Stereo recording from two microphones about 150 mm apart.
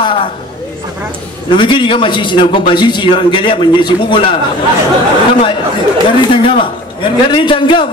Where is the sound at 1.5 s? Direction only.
35° left (ahead or behind).